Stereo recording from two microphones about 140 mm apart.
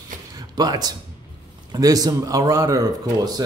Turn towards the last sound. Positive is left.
turn(degrees=-30)  # may be behind; listen again after turning